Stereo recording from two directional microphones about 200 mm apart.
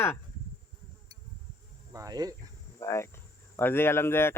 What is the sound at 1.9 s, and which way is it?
Speech, 20° right (ahead or behind).